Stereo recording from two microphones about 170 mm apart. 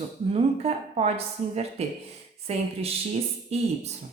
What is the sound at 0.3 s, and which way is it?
Speech, 35° right (ahead or behind).